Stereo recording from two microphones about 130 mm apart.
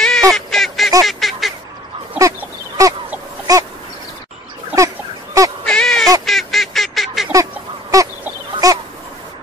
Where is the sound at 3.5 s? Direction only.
30° right (ahead or behind).